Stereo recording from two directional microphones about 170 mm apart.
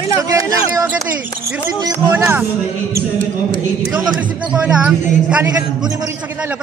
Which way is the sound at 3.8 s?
20° right (ahead or behind).